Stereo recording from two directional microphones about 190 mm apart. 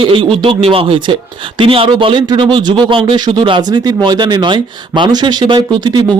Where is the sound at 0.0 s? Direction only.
30° right (ahead or behind).